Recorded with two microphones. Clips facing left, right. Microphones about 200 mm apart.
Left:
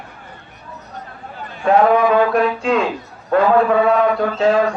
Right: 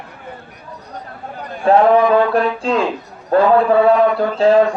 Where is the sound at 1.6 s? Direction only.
35° right (ahead or behind).